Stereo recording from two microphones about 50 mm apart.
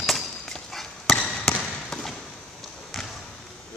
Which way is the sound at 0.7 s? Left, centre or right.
Centre.